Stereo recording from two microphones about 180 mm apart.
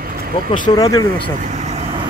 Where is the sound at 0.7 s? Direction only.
20° left (ahead or behind).